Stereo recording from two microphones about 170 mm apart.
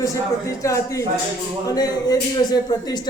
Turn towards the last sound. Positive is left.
turn(degrees=25)  # may be behind; listen again after turning